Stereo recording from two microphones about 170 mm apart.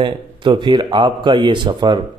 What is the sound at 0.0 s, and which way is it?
A man's voice, 25° right (ahead or behind).